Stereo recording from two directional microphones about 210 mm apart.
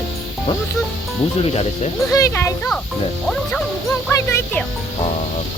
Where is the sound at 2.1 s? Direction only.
15° left (ahead or behind).